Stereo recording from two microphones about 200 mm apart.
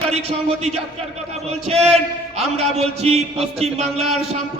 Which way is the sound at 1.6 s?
30° right (ahead or behind).